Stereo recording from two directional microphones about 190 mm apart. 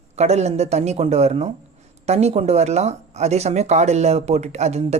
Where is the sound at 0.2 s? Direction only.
35° right (ahead or behind).